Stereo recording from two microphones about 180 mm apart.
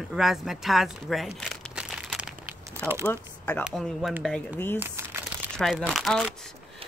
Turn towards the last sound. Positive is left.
turn(degrees=0)  # may be behind; listen again after turning